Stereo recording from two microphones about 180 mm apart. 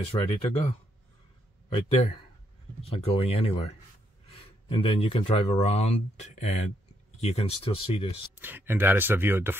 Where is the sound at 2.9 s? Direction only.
35° left (ahead or behind).